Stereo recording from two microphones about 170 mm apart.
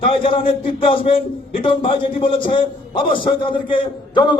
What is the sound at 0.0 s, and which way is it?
A man's voice, 30° left (ahead or behind).